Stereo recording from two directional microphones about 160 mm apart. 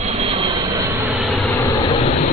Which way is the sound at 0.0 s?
40° right (ahead or behind).